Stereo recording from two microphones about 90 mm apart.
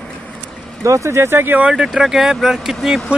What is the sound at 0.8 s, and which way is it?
Speech, 35° right (ahead or behind).